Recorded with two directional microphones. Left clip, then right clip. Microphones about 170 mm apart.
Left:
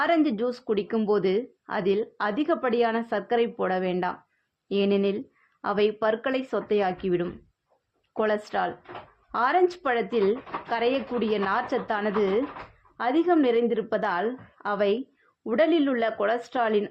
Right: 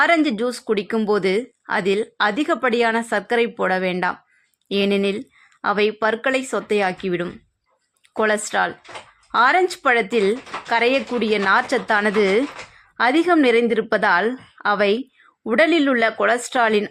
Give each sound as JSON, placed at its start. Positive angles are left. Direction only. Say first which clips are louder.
{"t": 0.0, "sound": "speech", "louder": "right 6 dB", "side_deg": -25}